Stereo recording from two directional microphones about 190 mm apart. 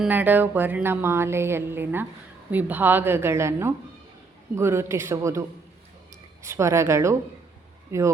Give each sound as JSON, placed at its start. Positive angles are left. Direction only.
{"t": 0.0, "sound": "speech", "side_deg": -10}
{"t": 6.4, "sound": "speech", "side_deg": -15}